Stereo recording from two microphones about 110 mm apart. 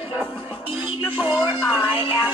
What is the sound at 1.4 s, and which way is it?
Speech, 5° left (ahead or behind).